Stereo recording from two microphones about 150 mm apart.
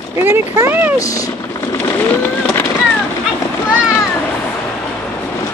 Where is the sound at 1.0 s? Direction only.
25° left (ahead or behind).